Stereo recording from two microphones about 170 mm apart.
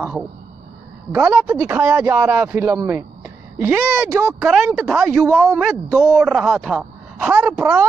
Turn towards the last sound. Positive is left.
turn(degrees=-10)  # may be behind; listen again after turning